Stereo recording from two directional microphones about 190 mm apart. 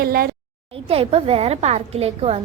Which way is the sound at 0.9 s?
30° right (ahead or behind).